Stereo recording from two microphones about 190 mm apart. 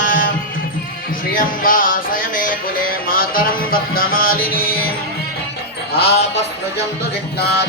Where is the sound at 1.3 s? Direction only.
45° left (ahead or behind).